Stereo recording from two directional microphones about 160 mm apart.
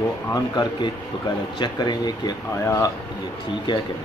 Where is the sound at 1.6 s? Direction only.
25° left (ahead or behind).